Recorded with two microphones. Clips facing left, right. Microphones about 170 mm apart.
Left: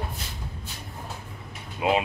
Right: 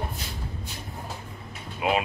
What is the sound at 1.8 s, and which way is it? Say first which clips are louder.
Music: left 2 dB; 25° left (ahead or behind).